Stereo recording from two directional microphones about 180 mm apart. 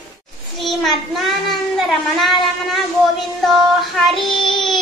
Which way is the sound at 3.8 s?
Centre (ahead or behind).